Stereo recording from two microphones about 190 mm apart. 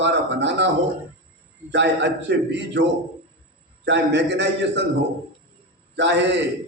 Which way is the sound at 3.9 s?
65° right (ahead or behind).